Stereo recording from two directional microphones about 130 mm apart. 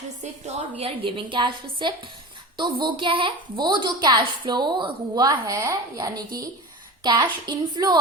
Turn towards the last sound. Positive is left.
turn(degrees=-30)  # may be behind; listen again after turning